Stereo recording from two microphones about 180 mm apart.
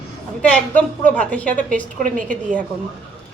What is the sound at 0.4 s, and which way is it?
A woman's voice, 10° left (ahead or behind).